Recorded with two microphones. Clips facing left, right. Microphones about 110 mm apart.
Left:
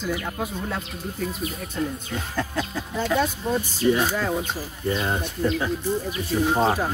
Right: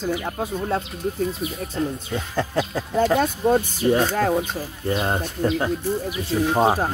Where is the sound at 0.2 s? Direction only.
30° right (ahead or behind).